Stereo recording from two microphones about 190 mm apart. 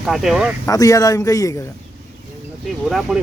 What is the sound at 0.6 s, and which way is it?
Speech, 20° left (ahead or behind).